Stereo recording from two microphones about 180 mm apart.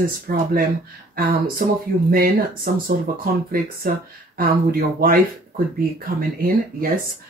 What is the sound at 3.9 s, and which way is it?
Speech, 55° right (ahead or behind).